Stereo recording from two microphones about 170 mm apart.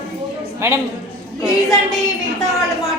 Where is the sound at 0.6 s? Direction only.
15° right (ahead or behind).